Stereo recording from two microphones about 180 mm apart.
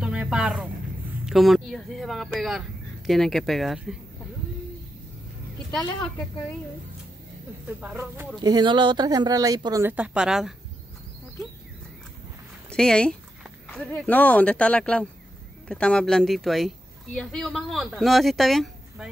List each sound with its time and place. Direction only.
0.0 s a sound: 5° right (ahead or behind)
1.2 s a woman's voice: centre (ahead or behind)
7.6 s speech: 5° right (ahead or behind)
8.4 s speech: 25° right (ahead or behind); by 10.5 s 5° right (ahead or behind)
12.6 s a woman's voice: 5° left (ahead or behind)